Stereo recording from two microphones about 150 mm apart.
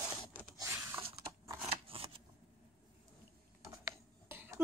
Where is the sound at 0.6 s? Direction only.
15° right (ahead or behind).